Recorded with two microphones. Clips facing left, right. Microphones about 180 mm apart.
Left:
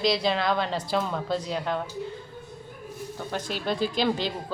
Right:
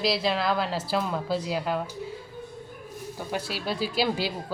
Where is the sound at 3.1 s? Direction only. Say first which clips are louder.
Even; 5° right (ahead or behind).